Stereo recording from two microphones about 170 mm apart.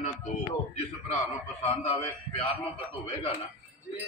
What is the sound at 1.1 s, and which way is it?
A man's voice, 35° left (ahead or behind).